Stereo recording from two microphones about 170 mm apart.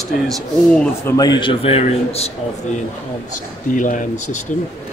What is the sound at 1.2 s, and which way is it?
A man's voice, 25° left (ahead or behind).